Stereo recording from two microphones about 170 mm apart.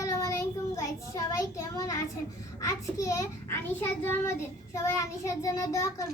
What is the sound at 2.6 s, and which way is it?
A child's voice, 15° left (ahead or behind).